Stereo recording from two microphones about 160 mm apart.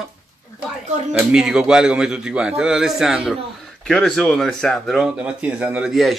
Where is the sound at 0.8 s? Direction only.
45° right (ahead or behind).